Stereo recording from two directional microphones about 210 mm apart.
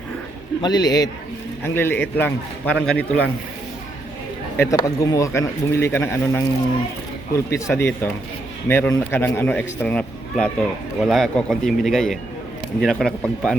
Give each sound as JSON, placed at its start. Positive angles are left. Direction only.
{"t": 0.6, "sound": "a man's voice", "side_deg": 20}
{"t": 4.5, "sound": "a man's voice", "side_deg": 15}